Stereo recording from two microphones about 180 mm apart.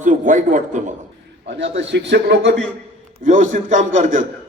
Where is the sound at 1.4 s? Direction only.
85° right.